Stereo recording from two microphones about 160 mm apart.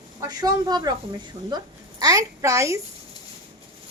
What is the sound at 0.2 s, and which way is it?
A woman's voice, 20° right (ahead or behind).